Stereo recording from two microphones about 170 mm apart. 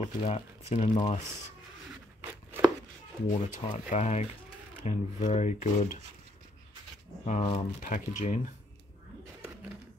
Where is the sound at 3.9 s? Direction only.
40° left (ahead or behind).